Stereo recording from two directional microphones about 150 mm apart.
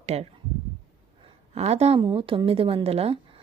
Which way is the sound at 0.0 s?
45° right (ahead or behind).